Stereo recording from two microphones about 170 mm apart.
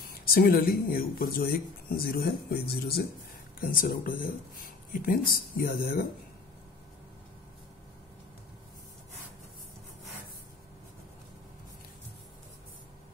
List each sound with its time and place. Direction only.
0.2 s speech: 60° left (ahead or behind)